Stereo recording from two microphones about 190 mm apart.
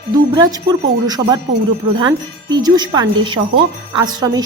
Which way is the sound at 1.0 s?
20° right (ahead or behind).